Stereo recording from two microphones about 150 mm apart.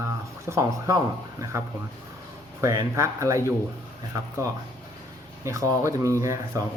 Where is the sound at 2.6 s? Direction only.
20° right (ahead or behind).